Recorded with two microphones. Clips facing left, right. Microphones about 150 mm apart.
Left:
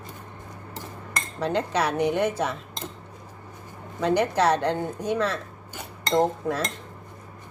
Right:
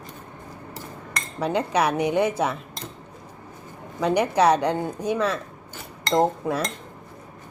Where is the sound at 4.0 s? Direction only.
10° right (ahead or behind).